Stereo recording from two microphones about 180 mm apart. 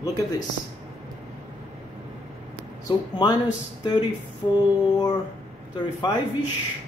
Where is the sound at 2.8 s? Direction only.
25° left (ahead or behind).